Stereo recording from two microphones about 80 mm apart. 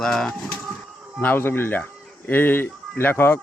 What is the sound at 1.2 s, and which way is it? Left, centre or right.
Speech, left.